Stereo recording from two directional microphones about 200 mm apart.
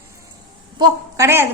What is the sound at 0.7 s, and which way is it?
Speech, 15° right (ahead or behind).